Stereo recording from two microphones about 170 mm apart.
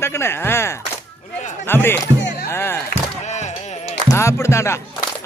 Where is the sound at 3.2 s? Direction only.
45° left (ahead or behind).